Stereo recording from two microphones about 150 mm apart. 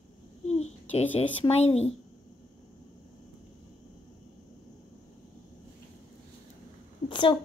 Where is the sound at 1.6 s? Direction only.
45° left (ahead or behind).